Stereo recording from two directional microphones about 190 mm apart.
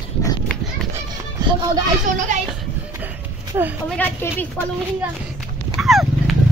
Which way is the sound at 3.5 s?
20° right (ahead or behind).